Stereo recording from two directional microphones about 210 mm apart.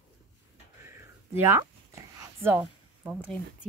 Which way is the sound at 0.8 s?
10° right (ahead or behind).